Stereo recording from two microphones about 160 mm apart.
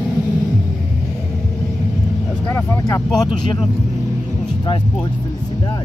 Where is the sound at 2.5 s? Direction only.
15° left (ahead or behind).